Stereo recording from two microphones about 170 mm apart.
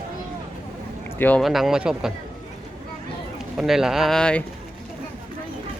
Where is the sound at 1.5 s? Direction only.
Centre (ahead or behind).